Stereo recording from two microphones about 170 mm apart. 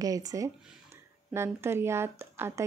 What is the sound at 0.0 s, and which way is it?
A woman's voice, 20° right (ahead or behind).